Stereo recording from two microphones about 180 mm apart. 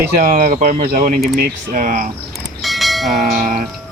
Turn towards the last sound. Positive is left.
turn(degrees=-50)  # may be behind; listen again after turning